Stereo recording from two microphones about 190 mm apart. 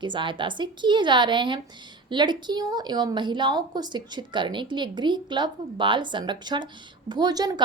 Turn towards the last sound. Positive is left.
turn(degrees=-20)  # may be behind; listen again after turning